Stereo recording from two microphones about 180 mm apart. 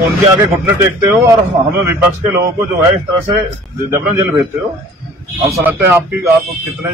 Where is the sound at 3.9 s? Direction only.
15° right (ahead or behind).